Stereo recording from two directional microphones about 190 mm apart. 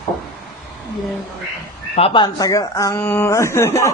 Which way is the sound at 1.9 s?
30° left (ahead or behind).